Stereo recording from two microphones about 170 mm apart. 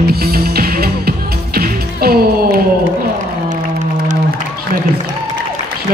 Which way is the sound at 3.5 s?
45° right (ahead or behind).